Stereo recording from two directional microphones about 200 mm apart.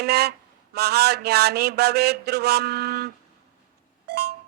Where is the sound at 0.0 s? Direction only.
55° right (ahead or behind).